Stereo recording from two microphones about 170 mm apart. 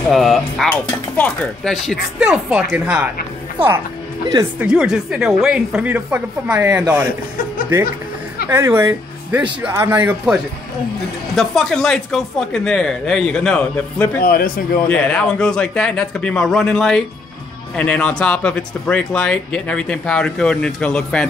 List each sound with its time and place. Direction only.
0.1 s speech: centre (ahead or behind)
3.6 s speech: 35° right (ahead or behind)
4.6 s speech: 5° right (ahead or behind)
8.5 s speech: 15° right (ahead or behind); by 14.2 s 10° left (ahead or behind)
14.2 s speech: 60° left (ahead or behind)
14.9 s speech: 5° left (ahead or behind)